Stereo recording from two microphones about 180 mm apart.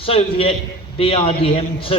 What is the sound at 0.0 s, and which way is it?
Speech, 30° left (ahead or behind).